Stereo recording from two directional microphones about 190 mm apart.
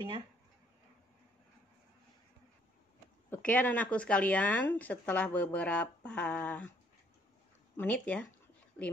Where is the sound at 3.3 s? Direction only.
10° left (ahead or behind).